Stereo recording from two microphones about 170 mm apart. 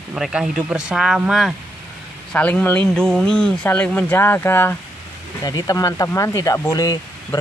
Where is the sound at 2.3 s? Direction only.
10° left (ahead or behind).